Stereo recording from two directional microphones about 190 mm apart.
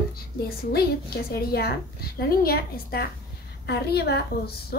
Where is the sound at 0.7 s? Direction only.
55° left (ahead or behind).